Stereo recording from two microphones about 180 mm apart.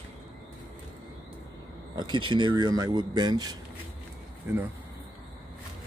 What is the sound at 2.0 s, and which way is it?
Speech, 25° right (ahead or behind).